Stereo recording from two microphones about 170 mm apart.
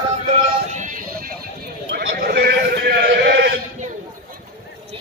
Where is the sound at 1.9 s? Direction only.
65° right (ahead or behind); by 3.5 s 85° right.